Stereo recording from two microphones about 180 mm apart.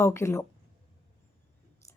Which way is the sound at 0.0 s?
15° left (ahead or behind).